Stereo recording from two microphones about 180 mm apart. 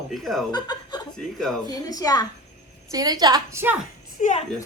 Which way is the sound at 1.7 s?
20° left (ahead or behind).